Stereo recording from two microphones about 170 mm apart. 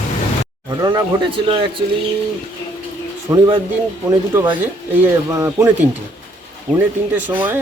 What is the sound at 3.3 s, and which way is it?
Speech, 20° right (ahead or behind).